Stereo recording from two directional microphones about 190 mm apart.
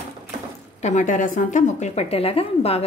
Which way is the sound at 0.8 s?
40° left (ahead or behind).